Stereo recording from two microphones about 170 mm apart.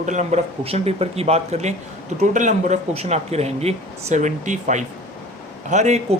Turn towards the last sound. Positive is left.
turn(degrees=-40)  # may be behind; listen again after turning